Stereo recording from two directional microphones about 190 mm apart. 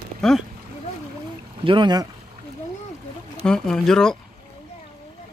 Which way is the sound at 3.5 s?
5° left (ahead or behind).